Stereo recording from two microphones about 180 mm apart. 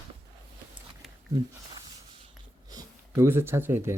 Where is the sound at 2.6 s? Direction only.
20° right (ahead or behind).